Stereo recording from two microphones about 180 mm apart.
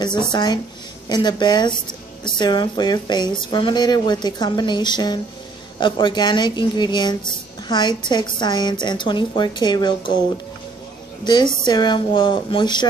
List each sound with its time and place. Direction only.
0.3 s speech: 25° left (ahead or behind)